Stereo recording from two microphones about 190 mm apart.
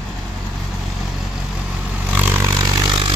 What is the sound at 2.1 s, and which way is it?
Vehicle, 10° right (ahead or behind).